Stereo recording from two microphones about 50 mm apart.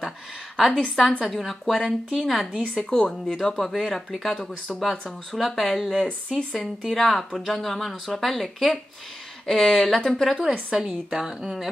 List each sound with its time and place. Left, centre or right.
0.6 s speech: centre
2.8 s speech: centre
3.7 s speech: centre
4.4 s speech: centre
10.7 s a woman's voice: centre